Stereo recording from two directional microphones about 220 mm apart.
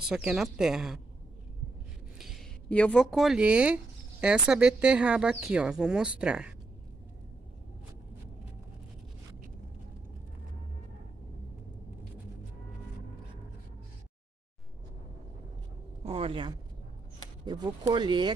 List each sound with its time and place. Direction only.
0.0 s a woman's voice: 5° right (ahead or behind)
2.1 s speech: centre (ahead or behind)
16.0 s speech: 25° right (ahead or behind)